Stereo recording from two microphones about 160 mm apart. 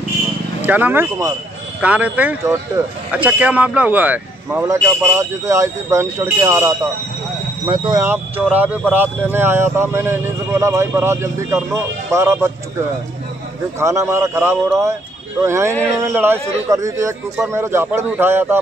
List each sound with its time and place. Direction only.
0.6 s speech: 10° right (ahead or behind)
13.7 s speech: 20° right (ahead or behind)